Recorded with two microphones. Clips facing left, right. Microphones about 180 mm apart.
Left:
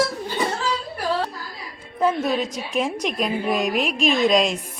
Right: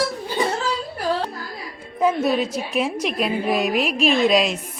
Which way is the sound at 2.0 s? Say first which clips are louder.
Right 2 dB; 10° right (ahead or behind).